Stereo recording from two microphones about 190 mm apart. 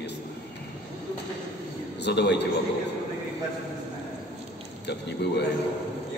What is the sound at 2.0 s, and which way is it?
Speech, 65° left (ahead or behind).